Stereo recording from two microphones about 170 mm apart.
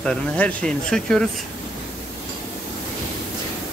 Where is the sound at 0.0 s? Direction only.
5° left (ahead or behind).